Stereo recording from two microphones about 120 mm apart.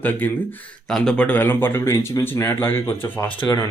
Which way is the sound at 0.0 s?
15° left (ahead or behind).